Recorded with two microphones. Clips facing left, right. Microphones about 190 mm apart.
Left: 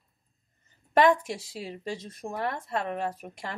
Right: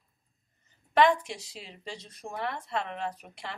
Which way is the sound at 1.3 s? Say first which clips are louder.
Left 6 dB; 50° left (ahead or behind).